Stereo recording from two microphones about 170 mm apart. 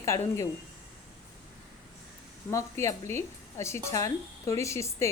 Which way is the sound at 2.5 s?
15° left (ahead or behind).